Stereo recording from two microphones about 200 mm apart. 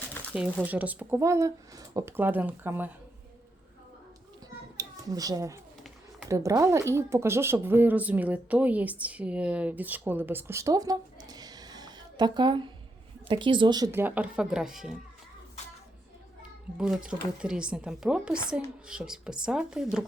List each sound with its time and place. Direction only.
0.3 s speech: 5° right (ahead or behind)
4.8 s speech: 15° right (ahead or behind); by 14.9 s centre (ahead or behind)
16.7 s speech: 5° right (ahead or behind)